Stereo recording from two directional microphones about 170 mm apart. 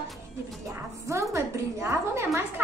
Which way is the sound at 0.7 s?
20° right (ahead or behind).